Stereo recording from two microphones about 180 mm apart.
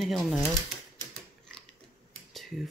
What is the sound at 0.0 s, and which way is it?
Speech, centre (ahead or behind).